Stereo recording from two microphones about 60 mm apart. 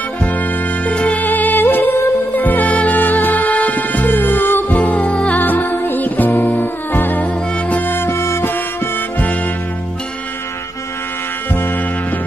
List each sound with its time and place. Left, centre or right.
0.2 s music: left